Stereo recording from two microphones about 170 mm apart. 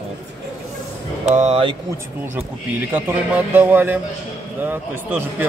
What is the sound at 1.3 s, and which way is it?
Speech, 40° right (ahead or behind).